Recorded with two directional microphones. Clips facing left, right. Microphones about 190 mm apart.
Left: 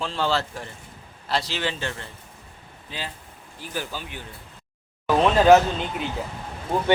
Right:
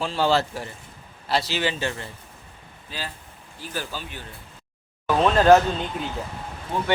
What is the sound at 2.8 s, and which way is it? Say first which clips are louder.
Speech: even; 20° left (ahead or behind).